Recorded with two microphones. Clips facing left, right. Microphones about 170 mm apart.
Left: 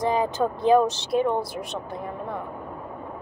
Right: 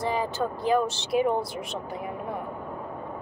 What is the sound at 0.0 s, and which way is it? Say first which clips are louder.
Speech: left 4 dB; 20° left (ahead or behind).